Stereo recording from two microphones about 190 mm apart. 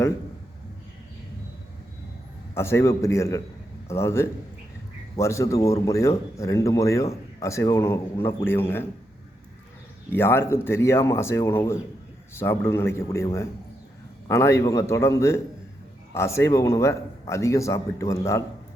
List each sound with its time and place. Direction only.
2.6 s speech: 15° left (ahead or behind)
10.1 s speech: 10° left (ahead or behind)